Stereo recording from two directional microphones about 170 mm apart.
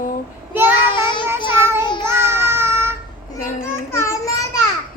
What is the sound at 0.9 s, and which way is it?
Child singing, 30° left (ahead or behind).